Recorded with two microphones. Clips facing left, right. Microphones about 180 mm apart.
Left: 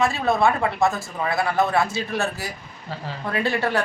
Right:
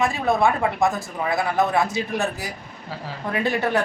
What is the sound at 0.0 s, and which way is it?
A woman's voice, 15° right (ahead or behind).